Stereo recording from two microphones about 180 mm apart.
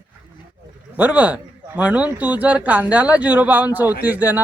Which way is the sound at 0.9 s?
10° right (ahead or behind).